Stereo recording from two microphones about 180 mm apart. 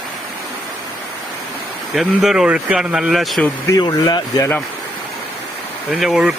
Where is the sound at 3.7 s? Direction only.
20° left (ahead or behind).